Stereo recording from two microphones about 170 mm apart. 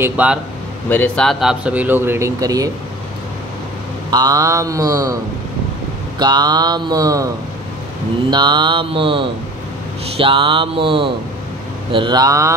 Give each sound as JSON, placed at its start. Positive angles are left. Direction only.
{"t": 0.0, "sound": "speech", "side_deg": -10}
{"t": 0.8, "sound": "speech", "side_deg": 10}
{"t": 4.1, "sound": "speech", "side_deg": -20}
{"t": 8.3, "sound": "speech", "side_deg": -25}
{"t": 10.1, "sound": "a sound", "side_deg": -30}
{"t": 11.9, "sound": "speech", "side_deg": -25}